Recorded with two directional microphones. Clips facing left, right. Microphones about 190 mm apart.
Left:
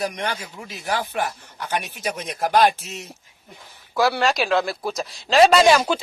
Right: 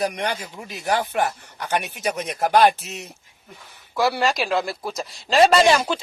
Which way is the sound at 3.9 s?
Centre (ahead or behind).